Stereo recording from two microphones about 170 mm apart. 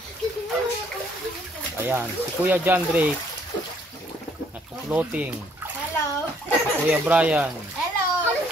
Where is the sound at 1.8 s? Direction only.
10° right (ahead or behind).